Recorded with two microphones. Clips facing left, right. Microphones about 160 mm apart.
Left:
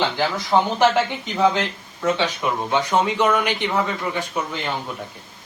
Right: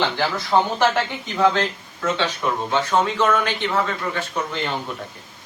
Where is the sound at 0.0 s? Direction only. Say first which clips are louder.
Even; 15° left (ahead or behind).